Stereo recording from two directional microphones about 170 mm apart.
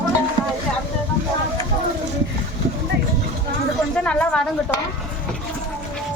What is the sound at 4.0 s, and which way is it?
Speech, 5° left (ahead or behind).